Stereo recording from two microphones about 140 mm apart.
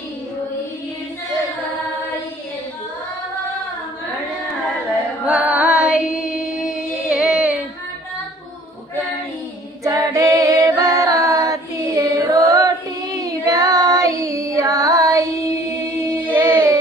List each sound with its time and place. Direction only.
5.2 s music: 10° right (ahead or behind)
7.1 s child singing: 5° right (ahead or behind)
9.8 s a capella: 25° right (ahead or behind)
16.3 s a sound: 15° right (ahead or behind)